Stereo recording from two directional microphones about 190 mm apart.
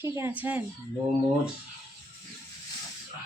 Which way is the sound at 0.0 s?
10° right (ahead or behind).